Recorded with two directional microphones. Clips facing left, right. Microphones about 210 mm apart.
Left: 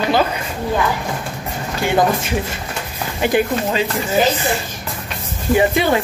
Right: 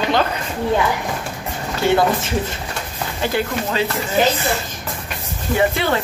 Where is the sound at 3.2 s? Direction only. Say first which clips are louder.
Left 5 dB; 15° left (ahead or behind).